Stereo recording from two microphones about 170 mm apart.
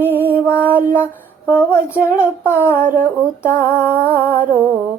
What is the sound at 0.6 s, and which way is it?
Music, 10° right (ahead or behind).